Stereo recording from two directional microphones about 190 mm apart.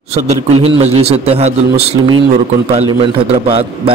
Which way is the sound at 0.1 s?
35° right (ahead or behind).